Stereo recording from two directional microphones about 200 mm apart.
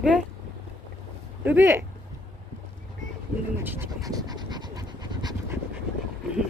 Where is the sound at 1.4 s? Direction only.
10° right (ahead or behind).